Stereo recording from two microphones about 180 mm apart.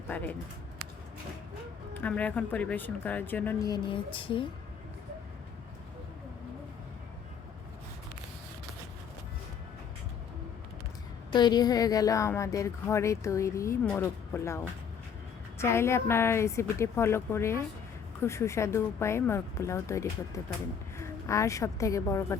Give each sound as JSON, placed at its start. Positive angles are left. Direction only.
{"t": 0.1, "sound": "a woman's voice", "side_deg": 10}
{"t": 2.0, "sound": "a woman's voice", "side_deg": 10}
{"t": 3.7, "sound": "speech", "side_deg": 30}
{"t": 11.3, "sound": "a woman's voice", "side_deg": 25}